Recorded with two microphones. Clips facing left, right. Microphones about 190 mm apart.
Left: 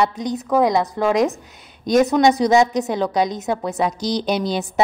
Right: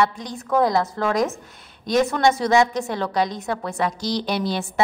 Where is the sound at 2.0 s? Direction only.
20° left (ahead or behind).